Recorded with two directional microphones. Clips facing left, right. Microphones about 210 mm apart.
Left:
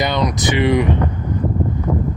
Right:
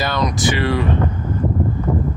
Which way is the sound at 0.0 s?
20° left (ahead or behind).